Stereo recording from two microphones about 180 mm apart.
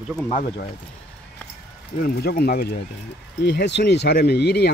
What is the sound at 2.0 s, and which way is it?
Speech, 60° left (ahead or behind).